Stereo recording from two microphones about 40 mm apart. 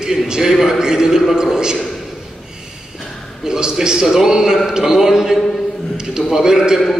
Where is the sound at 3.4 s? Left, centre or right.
Centre.